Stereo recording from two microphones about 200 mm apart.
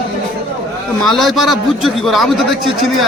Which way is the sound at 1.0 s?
Centre (ahead or behind).